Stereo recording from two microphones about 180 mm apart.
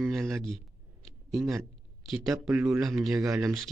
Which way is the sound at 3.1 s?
20° right (ahead or behind).